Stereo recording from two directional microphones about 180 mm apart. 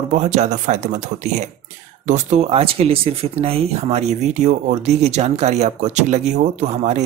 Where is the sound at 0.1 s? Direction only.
40° right (ahead or behind).